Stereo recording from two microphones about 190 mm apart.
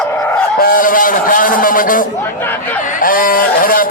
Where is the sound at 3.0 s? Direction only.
50° left (ahead or behind).